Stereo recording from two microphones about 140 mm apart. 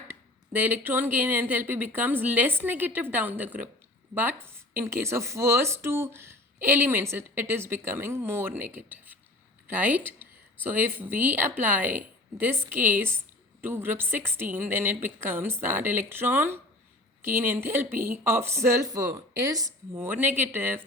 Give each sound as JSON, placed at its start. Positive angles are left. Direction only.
{"t": 0.5, "sound": "speech", "side_deg": -15}